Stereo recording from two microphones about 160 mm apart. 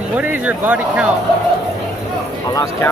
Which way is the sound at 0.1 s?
10° right (ahead or behind).